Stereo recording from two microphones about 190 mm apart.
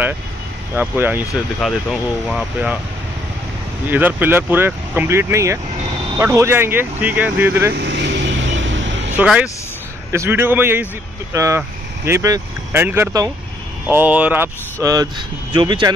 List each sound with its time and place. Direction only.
0.7 s speech: 10° right (ahead or behind)
3.9 s speech: 10° right (ahead or behind)
7.7 s vehicle: 65° right (ahead or behind)
9.1 s speech: 5° right (ahead or behind); by 15.9 s 25° right (ahead or behind)